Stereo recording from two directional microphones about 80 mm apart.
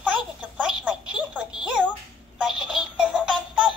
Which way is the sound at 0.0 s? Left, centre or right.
Centre.